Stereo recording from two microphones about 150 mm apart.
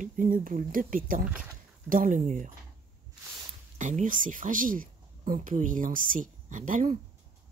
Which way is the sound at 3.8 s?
55° right (ahead or behind).